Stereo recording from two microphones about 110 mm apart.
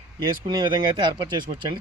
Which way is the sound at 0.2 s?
40° right (ahead or behind).